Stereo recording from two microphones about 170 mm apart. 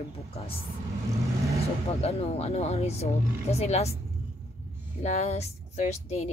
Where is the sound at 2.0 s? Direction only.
35° left (ahead or behind).